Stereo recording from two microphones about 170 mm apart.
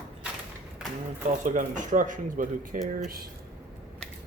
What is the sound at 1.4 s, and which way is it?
Speech, 50° right (ahead or behind).